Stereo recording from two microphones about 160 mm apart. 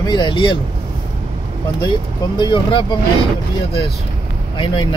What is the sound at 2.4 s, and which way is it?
Speech, 30° left (ahead or behind).